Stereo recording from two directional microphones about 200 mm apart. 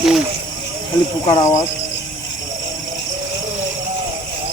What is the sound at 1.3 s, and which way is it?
Speech, 20° left (ahead or behind).